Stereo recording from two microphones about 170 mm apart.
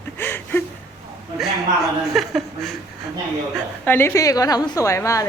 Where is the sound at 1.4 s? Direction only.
Centre (ahead or behind).